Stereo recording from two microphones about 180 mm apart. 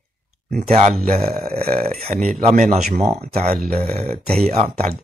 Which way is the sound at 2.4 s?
40° right (ahead or behind).